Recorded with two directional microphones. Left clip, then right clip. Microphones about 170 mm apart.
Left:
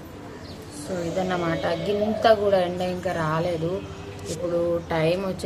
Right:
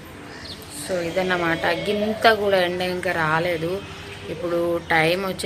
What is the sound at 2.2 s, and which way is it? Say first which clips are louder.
Speech: right 1 dB; 5° right (ahead or behind).